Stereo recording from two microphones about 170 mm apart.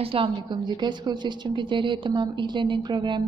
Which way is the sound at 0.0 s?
30° right (ahead or behind).